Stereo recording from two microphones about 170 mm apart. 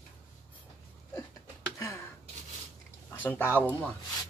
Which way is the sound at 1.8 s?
15° left (ahead or behind).